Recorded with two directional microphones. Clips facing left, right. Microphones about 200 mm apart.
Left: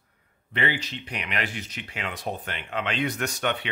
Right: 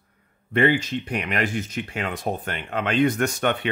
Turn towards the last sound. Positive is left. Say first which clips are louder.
# right 5 dB
turn(degrees=-50)  # may be behind; listen again after turning